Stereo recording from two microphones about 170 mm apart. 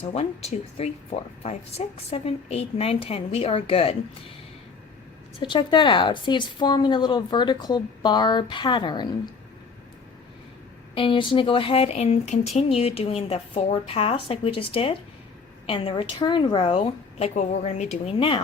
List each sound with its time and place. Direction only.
0.0 s speech: 40° left (ahead or behind)
5.4 s a woman's voice: 25° left (ahead or behind)
10.9 s speech: 30° left (ahead or behind)